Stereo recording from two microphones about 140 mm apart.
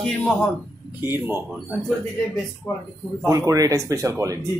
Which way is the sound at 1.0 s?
15° right (ahead or behind).